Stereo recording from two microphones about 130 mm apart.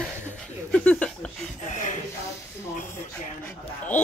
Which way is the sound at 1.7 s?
65° left (ahead or behind).